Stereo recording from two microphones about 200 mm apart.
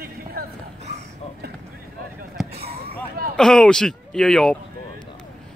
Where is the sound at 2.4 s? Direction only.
Centre (ahead or behind).